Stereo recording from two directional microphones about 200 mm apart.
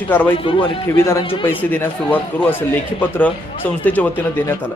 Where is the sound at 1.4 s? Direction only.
10° left (ahead or behind).